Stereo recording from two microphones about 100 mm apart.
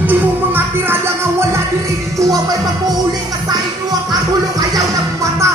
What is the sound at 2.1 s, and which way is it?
Music, 35° right (ahead or behind).